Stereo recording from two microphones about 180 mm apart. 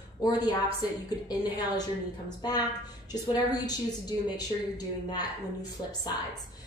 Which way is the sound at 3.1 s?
20° left (ahead or behind).